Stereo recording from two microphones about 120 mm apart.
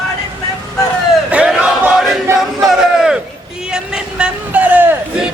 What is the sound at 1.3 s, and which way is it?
Battle cry, 10° right (ahead or behind).